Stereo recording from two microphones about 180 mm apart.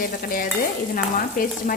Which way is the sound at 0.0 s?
50° left (ahead or behind).